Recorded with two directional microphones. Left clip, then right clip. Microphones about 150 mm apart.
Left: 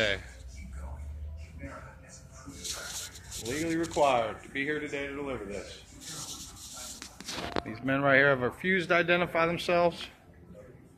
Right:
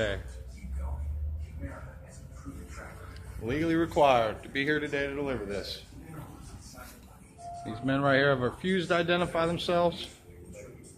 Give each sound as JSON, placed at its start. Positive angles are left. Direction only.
{"t": 3.4, "sound": "speech", "side_deg": -10}
{"t": 7.6, "sound": "speech", "side_deg": 5}